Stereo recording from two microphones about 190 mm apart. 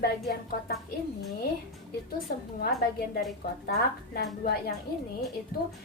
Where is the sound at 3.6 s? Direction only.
55° left (ahead or behind).